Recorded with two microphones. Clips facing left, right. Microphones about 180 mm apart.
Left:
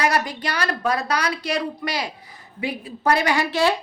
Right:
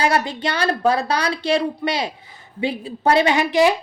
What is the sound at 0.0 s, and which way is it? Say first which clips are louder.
A woman's voice: right 3 dB; 25° right (ahead or behind).